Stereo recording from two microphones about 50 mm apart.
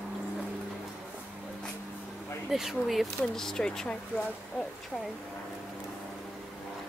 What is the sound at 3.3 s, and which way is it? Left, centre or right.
Speech, centre.